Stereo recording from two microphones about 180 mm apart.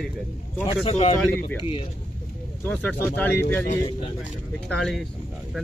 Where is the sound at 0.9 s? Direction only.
35° left (ahead or behind).